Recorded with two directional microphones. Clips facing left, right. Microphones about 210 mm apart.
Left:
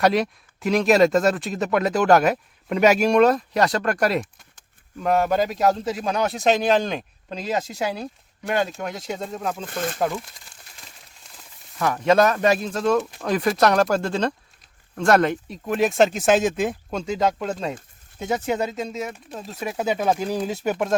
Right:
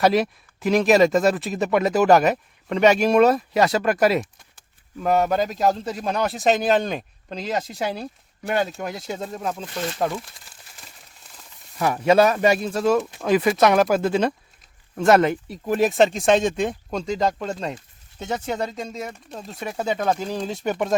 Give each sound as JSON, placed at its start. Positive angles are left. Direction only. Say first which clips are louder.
{"t": 0.0, "sound": "a man's voice", "louder": "right 1 dB", "side_deg": 0}
{"t": 9.6, "sound": "speech", "louder": "left 1 dB", "side_deg": 50}
{"t": 10.0, "sound": "crumpling", "louder": "even", "side_deg": 0}
{"t": 11.8, "sound": "a man's voice", "louder": "right 1 dB", "side_deg": -10}